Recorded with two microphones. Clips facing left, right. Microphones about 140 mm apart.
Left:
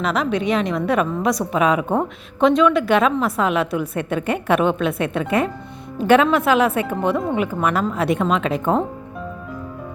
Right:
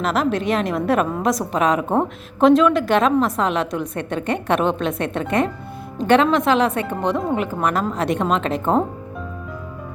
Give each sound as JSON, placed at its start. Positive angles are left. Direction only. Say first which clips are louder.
{"t": 0.0, "sound": "a woman's voice", "louder": "even", "side_deg": 0}